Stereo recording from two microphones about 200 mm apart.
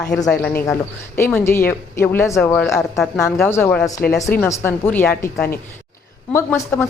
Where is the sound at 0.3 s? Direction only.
5° left (ahead or behind).